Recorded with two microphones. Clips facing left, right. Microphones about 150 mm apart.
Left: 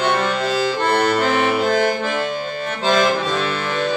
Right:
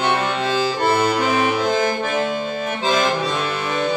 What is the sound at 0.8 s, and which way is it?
Accordion, 10° right (ahead or behind).